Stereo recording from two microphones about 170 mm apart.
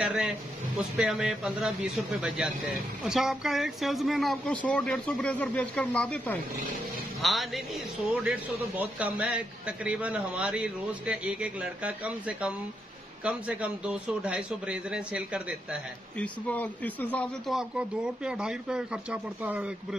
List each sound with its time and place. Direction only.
0.0 s a man's voice: 5° right (ahead or behind)
16.2 s speech: 10° left (ahead or behind)
17.6 s a man's voice: 5° right (ahead or behind)